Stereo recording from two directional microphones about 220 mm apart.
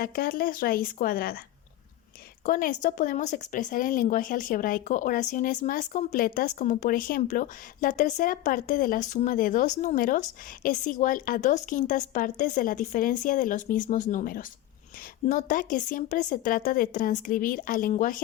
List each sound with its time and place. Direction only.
0.0 s speech: 40° left (ahead or behind)
2.4 s speech: 40° left (ahead or behind)